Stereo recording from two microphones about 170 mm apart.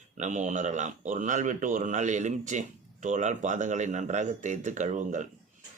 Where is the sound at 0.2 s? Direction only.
45° right (ahead or behind).